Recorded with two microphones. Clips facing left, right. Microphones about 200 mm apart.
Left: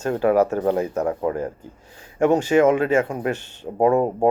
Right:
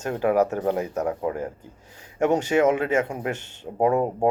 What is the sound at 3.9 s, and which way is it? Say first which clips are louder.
Speech: left 3 dB; 25° left (ahead or behind).